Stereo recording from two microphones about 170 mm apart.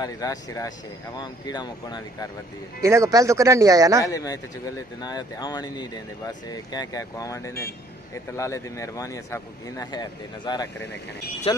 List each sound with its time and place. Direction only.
0.0 s speech: 20° left (ahead or behind)
2.8 s speech: 15° right (ahead or behind)
4.0 s speech: 20° left (ahead or behind)